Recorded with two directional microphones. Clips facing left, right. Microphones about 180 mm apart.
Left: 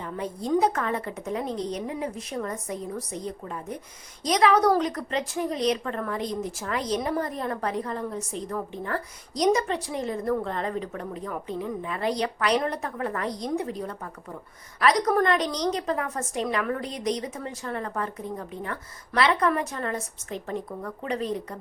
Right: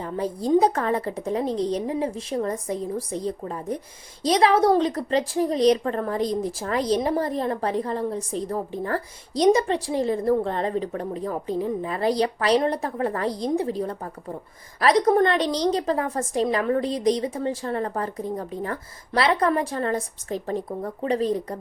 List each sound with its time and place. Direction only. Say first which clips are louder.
0.0 s a woman's voice: right 5 dB; 35° right (ahead or behind)